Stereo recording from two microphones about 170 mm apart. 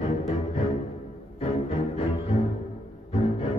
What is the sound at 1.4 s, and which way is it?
Music, 35° left (ahead or behind).